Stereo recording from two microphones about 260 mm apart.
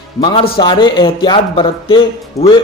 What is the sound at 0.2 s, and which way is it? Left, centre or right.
Speech, centre.